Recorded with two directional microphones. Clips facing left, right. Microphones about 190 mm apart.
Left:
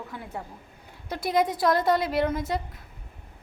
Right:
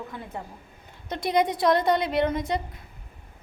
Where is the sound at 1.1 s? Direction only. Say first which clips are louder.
Right 1 dB; 5° left (ahead or behind).